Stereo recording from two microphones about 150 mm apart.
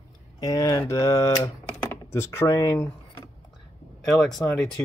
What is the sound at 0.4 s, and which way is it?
Speech, 25° left (ahead or behind).